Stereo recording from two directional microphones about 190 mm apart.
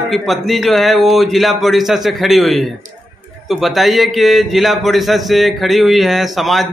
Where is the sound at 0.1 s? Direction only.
Centre (ahead or behind).